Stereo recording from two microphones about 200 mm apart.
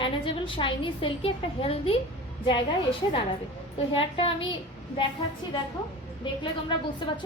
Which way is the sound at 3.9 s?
25° left (ahead or behind).